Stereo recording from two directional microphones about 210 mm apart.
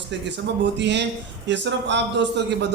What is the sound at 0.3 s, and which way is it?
A man's voice, 55° right (ahead or behind).